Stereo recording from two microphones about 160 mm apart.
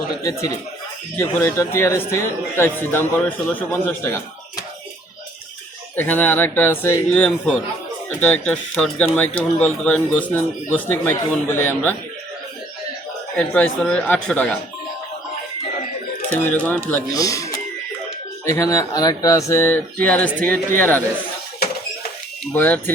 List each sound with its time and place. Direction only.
0.2 s a man's voice: 20° left (ahead or behind)
6.0 s speech: 10° left (ahead or behind)
8.2 s speech: 10° left (ahead or behind)
13.3 s speech: 5° left (ahead or behind)
16.3 s speech: 10° left (ahead or behind)
17.1 s speech: 20° left (ahead or behind)
22.5 s speech: 10° left (ahead or behind)